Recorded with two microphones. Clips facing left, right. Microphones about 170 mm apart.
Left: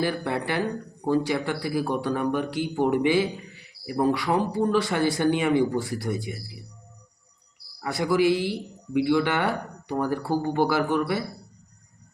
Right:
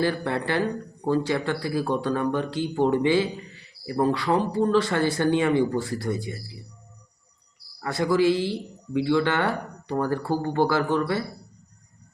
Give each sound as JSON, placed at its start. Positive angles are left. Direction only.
{"t": 0.0, "sound": "speech", "side_deg": 15}
{"t": 7.8, "sound": "speech", "side_deg": 15}